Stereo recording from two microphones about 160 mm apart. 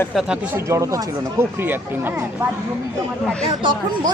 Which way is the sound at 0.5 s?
20° right (ahead or behind).